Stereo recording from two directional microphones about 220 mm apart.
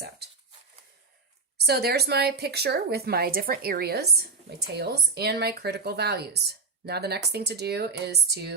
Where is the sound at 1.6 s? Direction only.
45° right (ahead or behind).